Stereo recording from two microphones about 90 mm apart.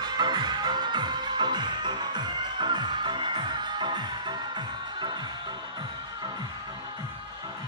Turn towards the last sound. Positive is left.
turn(degrees=-55)  # may be behind; listen again after turning